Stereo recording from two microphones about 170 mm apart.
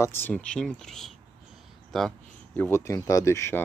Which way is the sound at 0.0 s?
15° left (ahead or behind).